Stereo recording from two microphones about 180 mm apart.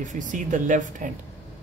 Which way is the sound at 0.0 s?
45° right (ahead or behind).